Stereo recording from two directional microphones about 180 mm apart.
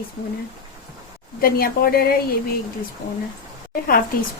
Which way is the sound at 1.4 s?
55° left (ahead or behind).